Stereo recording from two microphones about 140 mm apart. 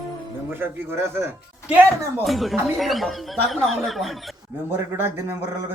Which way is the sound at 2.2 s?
Centre (ahead or behind).